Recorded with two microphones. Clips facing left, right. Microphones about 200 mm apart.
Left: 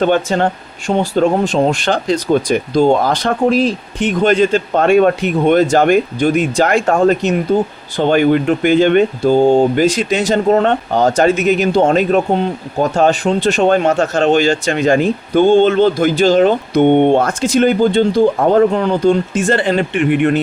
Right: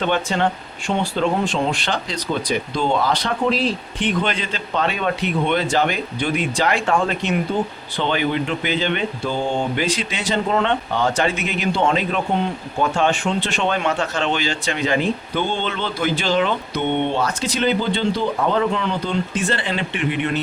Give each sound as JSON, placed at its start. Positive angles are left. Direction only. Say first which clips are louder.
{"t": 0.0, "sound": "speech", "louder": "left 6 dB", "side_deg": 45}